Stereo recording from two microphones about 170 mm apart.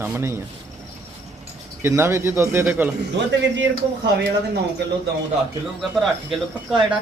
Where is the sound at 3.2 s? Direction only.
90° right.